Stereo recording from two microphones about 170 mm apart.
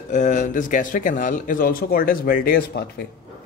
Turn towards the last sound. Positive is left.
turn(degrees=65)  # may be behind; listen again after turning